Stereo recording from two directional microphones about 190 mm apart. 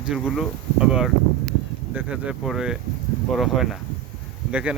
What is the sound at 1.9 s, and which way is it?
Speech, 5° right (ahead or behind).